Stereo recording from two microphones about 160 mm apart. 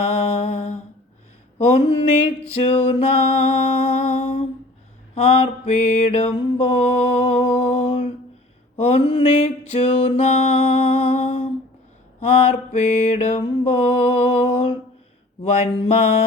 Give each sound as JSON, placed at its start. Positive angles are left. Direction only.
{"t": 0.0, "sound": "mantra", "side_deg": 40}